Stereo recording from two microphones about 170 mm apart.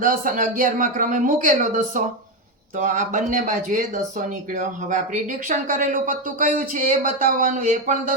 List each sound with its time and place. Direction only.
0.0 s speech: 50° right (ahead or behind)